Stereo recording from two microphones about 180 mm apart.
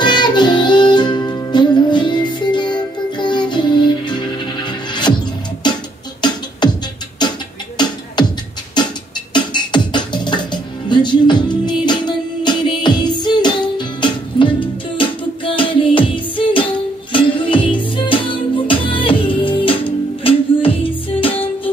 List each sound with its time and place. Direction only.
0.0 s music: 25° left (ahead or behind)
6.2 s beatboxing: 25° left (ahead or behind)
8.8 s music: 25° left (ahead or behind)